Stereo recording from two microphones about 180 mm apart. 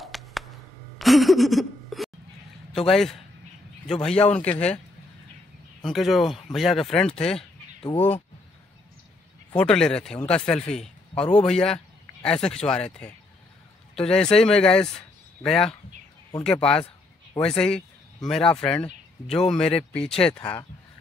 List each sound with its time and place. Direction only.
0.0 s music: centre (ahead or behind)
0.9 s a sound: centre (ahead or behind)
2.7 s speech: 5° left (ahead or behind)
5.8 s speech: centre (ahead or behind)
7.8 s speech: 30° left (ahead or behind)
9.6 s speech: 5° left (ahead or behind)